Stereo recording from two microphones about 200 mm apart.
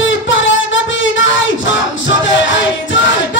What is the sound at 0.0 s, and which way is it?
Music, 70° left (ahead or behind).